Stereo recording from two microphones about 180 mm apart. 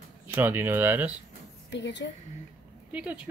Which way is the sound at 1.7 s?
80° left.